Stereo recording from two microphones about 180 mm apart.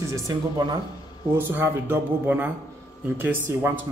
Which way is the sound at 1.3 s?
10° right (ahead or behind).